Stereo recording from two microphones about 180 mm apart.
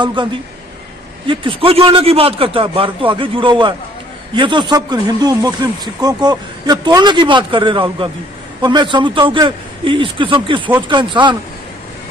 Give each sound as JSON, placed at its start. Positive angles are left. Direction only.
{"t": 0.0, "sound": "a man's voice", "side_deg": -25}